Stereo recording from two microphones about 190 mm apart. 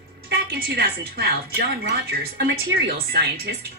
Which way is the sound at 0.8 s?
55° right (ahead or behind).